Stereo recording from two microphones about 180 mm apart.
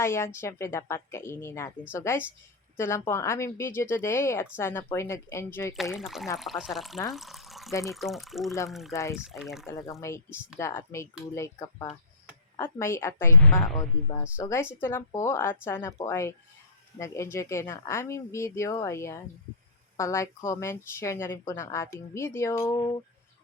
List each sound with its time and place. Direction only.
0.0 s a woman's voice: 15° left (ahead or behind)
5.7 s speech: centre (ahead or behind)
7.1 s a sound: centre (ahead or behind)
7.9 s speech: centre (ahead or behind)
8.9 s a woman's voice: 15° left (ahead or behind)
9.1 s speech: 5° right (ahead or behind)
9.6 s a woman's voice: 15° left (ahead or behind)